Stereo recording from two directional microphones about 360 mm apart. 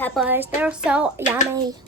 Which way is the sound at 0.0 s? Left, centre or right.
Centre.